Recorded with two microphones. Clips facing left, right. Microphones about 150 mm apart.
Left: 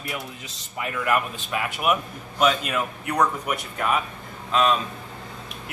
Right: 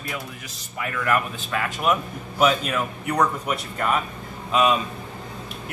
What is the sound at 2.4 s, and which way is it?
A man's voice, centre (ahead or behind).